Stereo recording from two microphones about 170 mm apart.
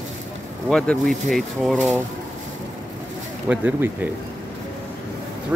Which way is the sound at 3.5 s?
10° right (ahead or behind).